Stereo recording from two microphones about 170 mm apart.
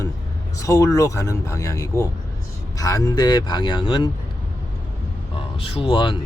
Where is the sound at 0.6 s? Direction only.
20° left (ahead or behind).